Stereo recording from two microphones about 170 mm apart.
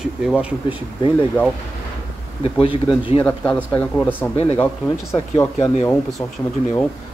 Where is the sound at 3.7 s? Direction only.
5° left (ahead or behind).